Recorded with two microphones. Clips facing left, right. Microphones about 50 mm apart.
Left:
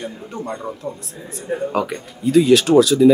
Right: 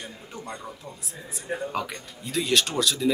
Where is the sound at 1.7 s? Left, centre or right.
Centre.